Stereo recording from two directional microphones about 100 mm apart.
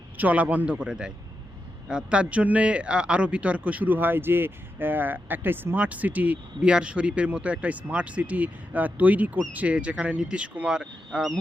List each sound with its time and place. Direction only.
0.2 s a man's voice: 15° right (ahead or behind)